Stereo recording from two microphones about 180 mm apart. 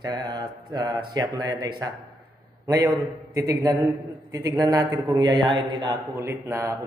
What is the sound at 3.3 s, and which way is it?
A man's voice, 20° right (ahead or behind).